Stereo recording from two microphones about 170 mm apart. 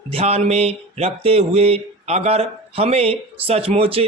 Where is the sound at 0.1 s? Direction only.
35° right (ahead or behind).